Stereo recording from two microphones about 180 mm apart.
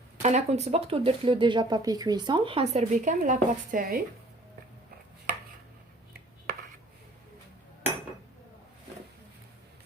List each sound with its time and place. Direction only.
0.2 s speech: 40° right (ahead or behind)